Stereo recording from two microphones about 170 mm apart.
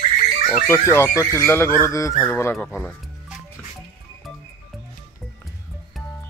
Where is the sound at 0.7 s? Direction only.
15° left (ahead or behind).